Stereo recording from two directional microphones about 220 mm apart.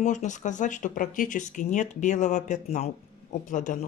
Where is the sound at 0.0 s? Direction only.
35° left (ahead or behind).